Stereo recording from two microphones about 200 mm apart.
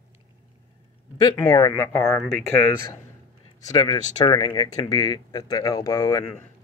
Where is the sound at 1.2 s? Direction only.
15° left (ahead or behind).